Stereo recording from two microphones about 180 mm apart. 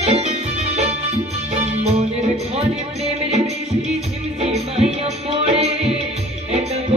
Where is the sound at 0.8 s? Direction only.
35° right (ahead or behind).